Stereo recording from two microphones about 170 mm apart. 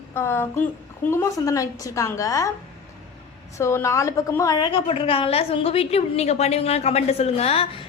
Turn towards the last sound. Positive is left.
turn(degrees=35)  # may be behind; listen again after turning